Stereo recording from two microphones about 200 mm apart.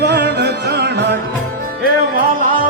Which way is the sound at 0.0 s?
55° right (ahead or behind).